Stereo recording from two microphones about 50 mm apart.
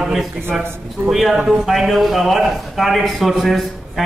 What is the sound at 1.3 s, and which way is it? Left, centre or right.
Speech, centre.